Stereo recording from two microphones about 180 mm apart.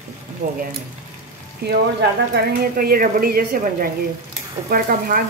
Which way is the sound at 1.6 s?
65° right (ahead or behind).